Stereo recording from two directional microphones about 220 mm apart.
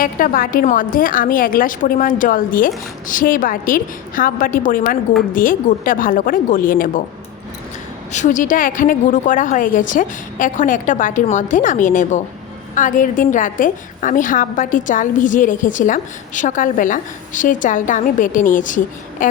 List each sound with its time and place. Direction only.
0.0 s a woman's voice: 40° left (ahead or behind)
8.1 s a woman's voice: 35° left (ahead or behind)